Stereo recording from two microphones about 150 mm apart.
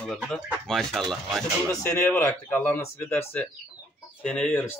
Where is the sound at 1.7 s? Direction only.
20° left (ahead or behind).